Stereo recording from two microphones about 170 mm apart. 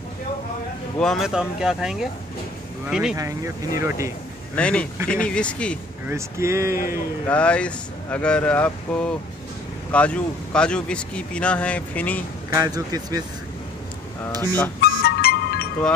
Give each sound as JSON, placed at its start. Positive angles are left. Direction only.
{"t": 0.9, "sound": "speech", "side_deg": 0}
{"t": 3.2, "sound": "speech", "side_deg": -20}
{"t": 4.6, "sound": "speech", "side_deg": 5}
{"t": 6.0, "sound": "speech", "side_deg": -15}
{"t": 7.2, "sound": "speech", "side_deg": 5}
{"t": 12.5, "sound": "speech", "side_deg": -20}
{"t": 14.4, "sound": "speech", "side_deg": 10}
{"t": 14.8, "sound": "music", "side_deg": 65}